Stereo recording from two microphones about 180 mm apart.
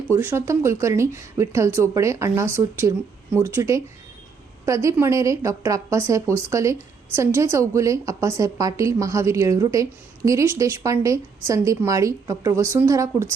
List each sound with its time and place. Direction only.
0.1 s speech: 15° right (ahead or behind)